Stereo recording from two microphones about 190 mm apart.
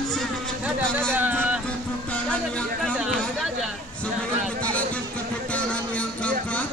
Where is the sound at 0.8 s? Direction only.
5° left (ahead or behind).